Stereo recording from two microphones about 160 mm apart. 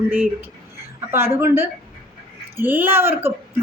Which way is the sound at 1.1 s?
15° right (ahead or behind).